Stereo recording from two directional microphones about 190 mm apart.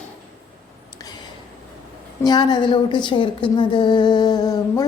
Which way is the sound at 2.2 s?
20° left (ahead or behind).